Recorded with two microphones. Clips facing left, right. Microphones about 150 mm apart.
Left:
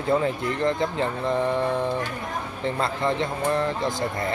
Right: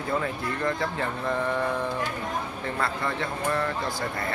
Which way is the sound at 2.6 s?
25° left (ahead or behind).